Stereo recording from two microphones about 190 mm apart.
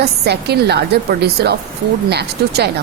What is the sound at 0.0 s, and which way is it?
A woman's voice, 60° right (ahead or behind).